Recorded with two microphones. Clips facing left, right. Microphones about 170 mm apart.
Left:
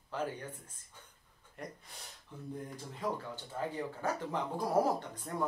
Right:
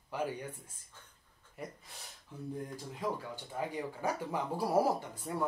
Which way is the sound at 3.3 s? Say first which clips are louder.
Right 1 dB; 10° right (ahead or behind).